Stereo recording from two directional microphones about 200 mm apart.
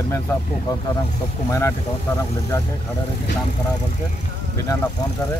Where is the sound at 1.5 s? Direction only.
15° left (ahead or behind).